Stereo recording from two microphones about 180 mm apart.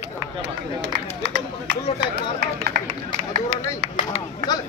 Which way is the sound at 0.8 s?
75° right (ahead or behind).